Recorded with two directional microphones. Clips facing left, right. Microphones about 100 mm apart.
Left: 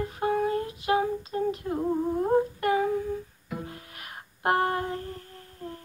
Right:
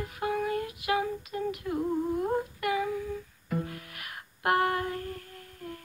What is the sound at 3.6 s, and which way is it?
Music, 25° left (ahead or behind).